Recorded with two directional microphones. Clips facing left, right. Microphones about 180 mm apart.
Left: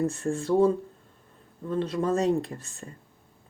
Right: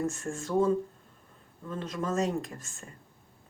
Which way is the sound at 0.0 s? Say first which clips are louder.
Left 5 dB; 35° left (ahead or behind).